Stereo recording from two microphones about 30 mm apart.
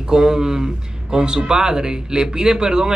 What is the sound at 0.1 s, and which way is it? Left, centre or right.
Speech, right.